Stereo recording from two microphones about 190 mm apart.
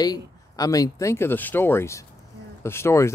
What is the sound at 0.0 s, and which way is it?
Speech, 20° left (ahead or behind).